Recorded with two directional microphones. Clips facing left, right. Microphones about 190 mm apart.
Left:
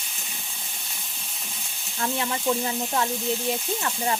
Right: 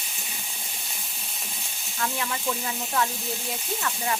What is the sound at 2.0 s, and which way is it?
Frying, 30° left (ahead or behind).